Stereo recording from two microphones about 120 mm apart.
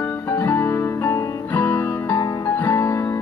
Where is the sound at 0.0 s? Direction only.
20° left (ahead or behind).